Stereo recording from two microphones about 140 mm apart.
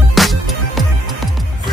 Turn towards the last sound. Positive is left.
turn(degrees=0)  # may be behind; listen again after turning